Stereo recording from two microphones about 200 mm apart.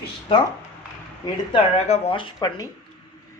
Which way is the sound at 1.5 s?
35° left (ahead or behind).